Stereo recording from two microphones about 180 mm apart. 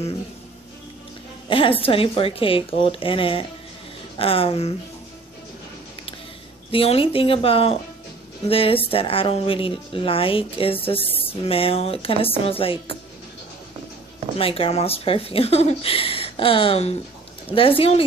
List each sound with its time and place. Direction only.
1.5 s speech: 30° left (ahead or behind)
6.7 s speech: 30° left (ahead or behind)
11.0 s speech: 10° left (ahead or behind)
11.4 s speech: 30° left (ahead or behind)
14.4 s speech: 30° left (ahead or behind)